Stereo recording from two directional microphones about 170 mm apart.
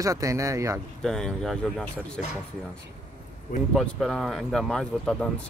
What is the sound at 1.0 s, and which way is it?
Speech, 5° left (ahead or behind).